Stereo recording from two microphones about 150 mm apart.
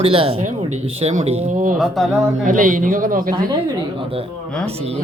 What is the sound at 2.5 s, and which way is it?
Speech, 65° right (ahead or behind).